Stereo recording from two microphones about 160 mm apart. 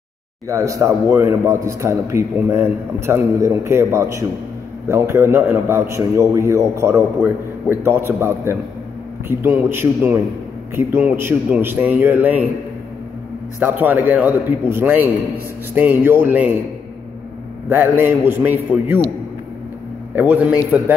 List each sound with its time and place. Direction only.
0.5 s a man's voice: 20° right (ahead or behind)
13.6 s a man's voice: 10° right (ahead or behind)
17.6 s a man's voice: 15° right (ahead or behind)
20.2 s a man's voice: 10° right (ahead or behind)